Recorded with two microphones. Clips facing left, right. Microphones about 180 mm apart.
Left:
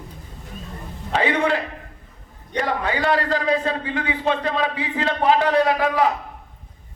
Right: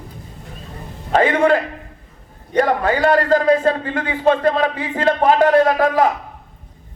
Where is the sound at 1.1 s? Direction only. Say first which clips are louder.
Right 6 dB; 45° right (ahead or behind).